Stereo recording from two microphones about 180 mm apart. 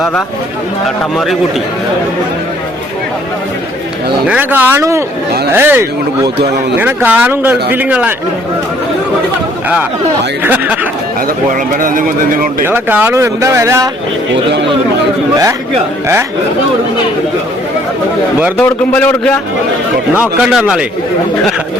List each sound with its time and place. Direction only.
1.1 s a man's voice: centre (ahead or behind)
4.3 s speech: 10° right (ahead or behind)
10.4 s speech: 10° right (ahead or behind)
11.8 s speech: 50° right (ahead or behind)
12.6 s speech: 10° right (ahead or behind)
18.5 s a man's voice: 10° left (ahead or behind)
20.1 s a man's voice: 5° right (ahead or behind)